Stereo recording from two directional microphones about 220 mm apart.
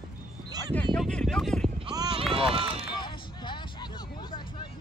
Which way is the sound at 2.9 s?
20° left (ahead or behind).